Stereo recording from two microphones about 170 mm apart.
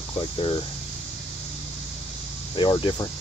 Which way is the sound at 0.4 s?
30° left (ahead or behind).